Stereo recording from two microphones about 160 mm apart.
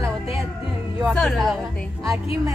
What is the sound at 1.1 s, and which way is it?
Speech, centre (ahead or behind).